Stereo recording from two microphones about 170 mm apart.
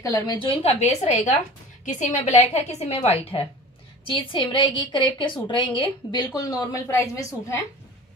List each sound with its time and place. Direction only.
0.0 s a woman's voice: 25° left (ahead or behind)